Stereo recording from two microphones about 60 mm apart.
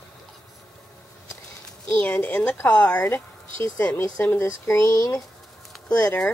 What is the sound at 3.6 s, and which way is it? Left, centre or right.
Speech, left.